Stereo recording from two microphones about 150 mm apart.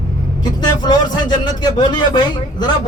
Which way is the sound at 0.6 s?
30° left (ahead or behind).